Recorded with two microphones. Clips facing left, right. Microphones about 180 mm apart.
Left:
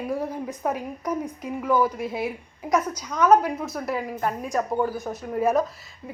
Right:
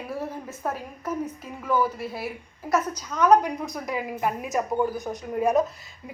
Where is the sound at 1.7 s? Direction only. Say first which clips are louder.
Left 2 dB; 15° left (ahead or behind).